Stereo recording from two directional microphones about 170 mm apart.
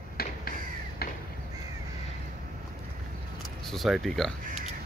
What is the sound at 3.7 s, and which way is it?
Speech, centre (ahead or behind).